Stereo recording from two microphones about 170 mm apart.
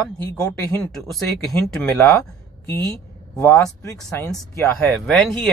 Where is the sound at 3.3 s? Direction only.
15° left (ahead or behind).